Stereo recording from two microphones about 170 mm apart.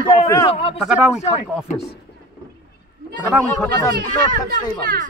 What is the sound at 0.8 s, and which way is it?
Speech, centre (ahead or behind).